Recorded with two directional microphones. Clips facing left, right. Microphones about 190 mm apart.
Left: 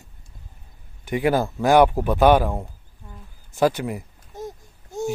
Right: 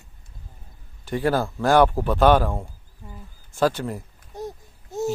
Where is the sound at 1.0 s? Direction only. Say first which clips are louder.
Left 2 dB; 15° left (ahead or behind).